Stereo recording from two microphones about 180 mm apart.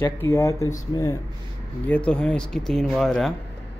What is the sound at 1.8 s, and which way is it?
Speech, 10° left (ahead or behind).